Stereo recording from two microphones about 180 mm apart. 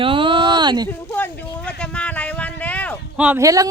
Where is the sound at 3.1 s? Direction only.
5° right (ahead or behind).